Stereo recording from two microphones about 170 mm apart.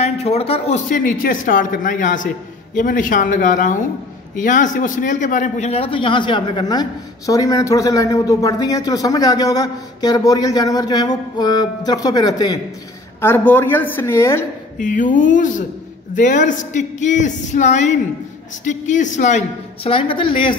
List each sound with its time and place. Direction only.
0.0 s a man's voice: 35° left (ahead or behind)
13.2 s a woman's voice: 10° left (ahead or behind)
14.8 s a woman's voice: 50° left (ahead or behind); by 20.5 s 30° left (ahead or behind)